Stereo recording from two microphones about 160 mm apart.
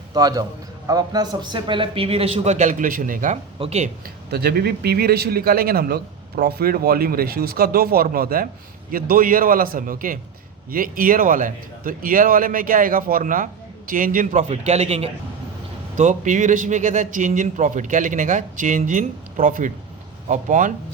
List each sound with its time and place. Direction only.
0.1 s a man's voice: 25° right (ahead or behind); by 3.3 s 55° right (ahead or behind)
3.6 s a man's voice: 40° right (ahead or behind)
4.0 s a man's voice: 80° right; by 15.1 s 40° right (ahead or behind)
16.0 s a man's voice: 50° right (ahead or behind)